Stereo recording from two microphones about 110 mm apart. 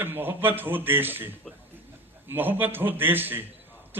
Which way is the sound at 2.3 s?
20° right (ahead or behind).